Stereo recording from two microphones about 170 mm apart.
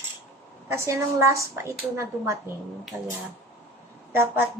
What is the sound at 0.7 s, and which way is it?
A woman's voice, 15° right (ahead or behind).